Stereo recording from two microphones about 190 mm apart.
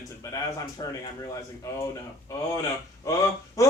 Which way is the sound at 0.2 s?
15° left (ahead or behind).